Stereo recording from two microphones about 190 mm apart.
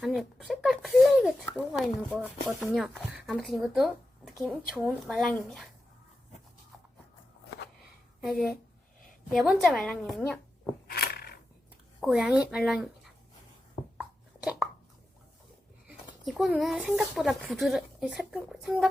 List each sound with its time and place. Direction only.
0.0 s speech: centre (ahead or behind)
8.3 s speech: centre (ahead or behind)
10.8 s a sound: 55° left (ahead or behind)
11.9 s speech: 5° right (ahead or behind)
14.0 s a sound: centre (ahead or behind)
16.2 s speech: 5° right (ahead or behind)